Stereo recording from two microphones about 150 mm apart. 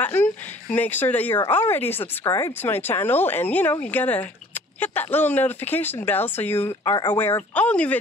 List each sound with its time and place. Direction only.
0.0 s speech: 10° left (ahead or behind)
6.8 s speech: 30° left (ahead or behind)
7.2 s speech: 15° left (ahead or behind)